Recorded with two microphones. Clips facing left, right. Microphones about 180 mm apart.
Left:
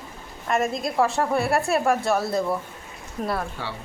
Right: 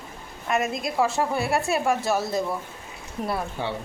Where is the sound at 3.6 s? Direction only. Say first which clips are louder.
Right 4 dB; 20° right (ahead or behind).